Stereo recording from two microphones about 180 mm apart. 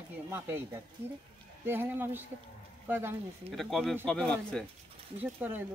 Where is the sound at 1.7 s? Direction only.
10° right (ahead or behind).